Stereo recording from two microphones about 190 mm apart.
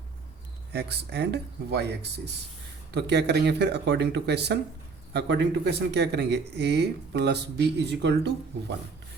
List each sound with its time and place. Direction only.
0.7 s speech: 60° right (ahead or behind)